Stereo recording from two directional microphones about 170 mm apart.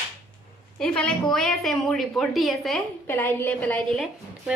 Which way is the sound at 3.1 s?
10° left (ahead or behind).